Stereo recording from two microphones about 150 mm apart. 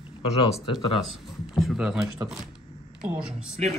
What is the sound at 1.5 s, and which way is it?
Speech, 5° right (ahead or behind).